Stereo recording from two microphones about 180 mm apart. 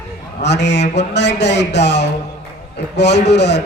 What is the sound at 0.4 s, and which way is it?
A man's voice, 75° left (ahead or behind).